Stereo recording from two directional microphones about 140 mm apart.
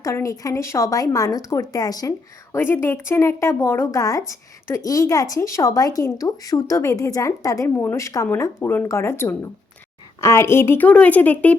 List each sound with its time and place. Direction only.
0.0 s a woman's voice: 20° left (ahead or behind)